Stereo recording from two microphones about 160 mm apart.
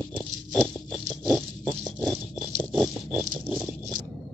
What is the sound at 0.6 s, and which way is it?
Rattle, 5° left (ahead or behind).